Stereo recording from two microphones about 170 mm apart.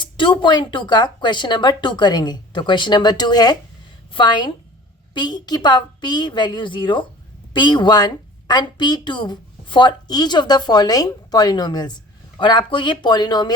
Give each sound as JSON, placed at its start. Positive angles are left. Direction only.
{"t": 0.0, "sound": "a woman's voice", "side_deg": 30}